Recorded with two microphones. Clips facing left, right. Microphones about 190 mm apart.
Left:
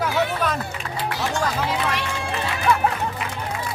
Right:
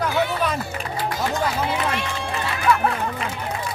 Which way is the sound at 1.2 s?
75° left (ahead or behind).